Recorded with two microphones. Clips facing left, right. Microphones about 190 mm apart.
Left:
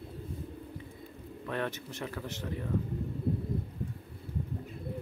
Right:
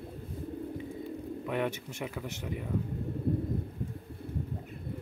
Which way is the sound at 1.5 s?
10° right (ahead or behind).